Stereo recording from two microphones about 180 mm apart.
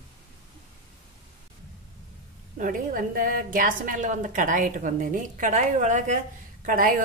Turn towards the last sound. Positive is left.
turn(degrees=-50)  # may be behind; listen again after turning